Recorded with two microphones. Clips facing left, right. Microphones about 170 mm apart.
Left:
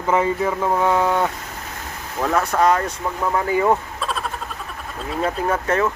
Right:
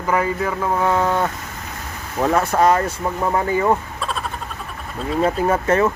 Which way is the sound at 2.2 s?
15° right (ahead or behind).